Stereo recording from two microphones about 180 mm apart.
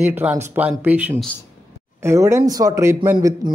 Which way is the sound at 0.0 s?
10° right (ahead or behind).